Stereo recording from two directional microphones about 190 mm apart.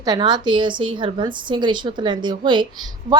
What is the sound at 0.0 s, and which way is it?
A woman's voice, 20° right (ahead or behind).